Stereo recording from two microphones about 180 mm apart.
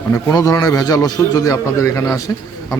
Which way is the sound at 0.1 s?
20° left (ahead or behind).